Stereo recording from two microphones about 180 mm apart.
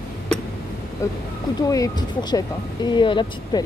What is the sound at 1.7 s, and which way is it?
Speech, 20° left (ahead or behind).